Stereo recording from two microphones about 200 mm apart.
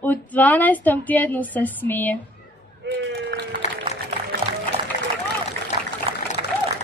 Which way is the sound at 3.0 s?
55° right (ahead or behind).